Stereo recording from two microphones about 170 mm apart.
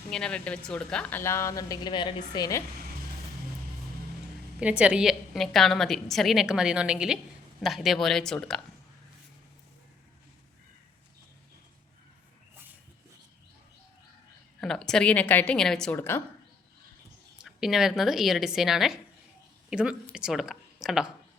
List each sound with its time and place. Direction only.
0.1 s a woman's voice: 5° left (ahead or behind)
1.2 s a woman's voice: 15° left (ahead or behind)
4.6 s a woman's voice: 5° right (ahead or behind)
14.6 s a woman's voice: 5° left (ahead or behind)
17.4 s a woman's voice: 5° right (ahead or behind)